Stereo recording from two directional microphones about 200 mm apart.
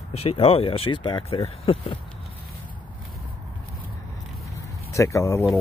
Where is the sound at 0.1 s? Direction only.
30° left (ahead or behind).